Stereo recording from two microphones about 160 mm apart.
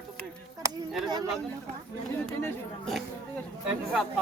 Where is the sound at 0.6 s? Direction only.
20° right (ahead or behind).